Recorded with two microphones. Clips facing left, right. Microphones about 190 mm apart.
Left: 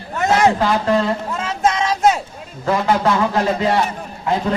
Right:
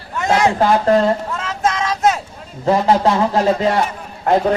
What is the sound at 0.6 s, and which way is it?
Speech, 40° right (ahead or behind).